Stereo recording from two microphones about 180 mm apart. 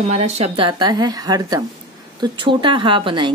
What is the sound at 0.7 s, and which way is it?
Speech, 25° right (ahead or behind).